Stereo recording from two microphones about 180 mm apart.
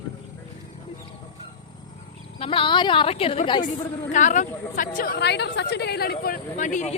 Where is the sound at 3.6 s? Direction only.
45° left (ahead or behind).